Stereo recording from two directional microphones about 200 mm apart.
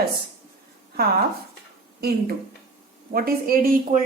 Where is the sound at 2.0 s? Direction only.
50° right (ahead or behind).